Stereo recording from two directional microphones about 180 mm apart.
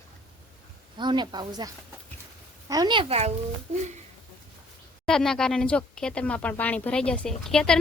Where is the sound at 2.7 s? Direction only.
25° right (ahead or behind); by 3.8 s 40° right (ahead or behind).